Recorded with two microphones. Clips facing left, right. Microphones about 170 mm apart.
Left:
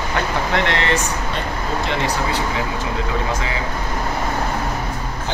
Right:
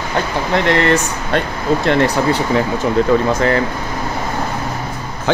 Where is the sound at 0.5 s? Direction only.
40° right (ahead or behind).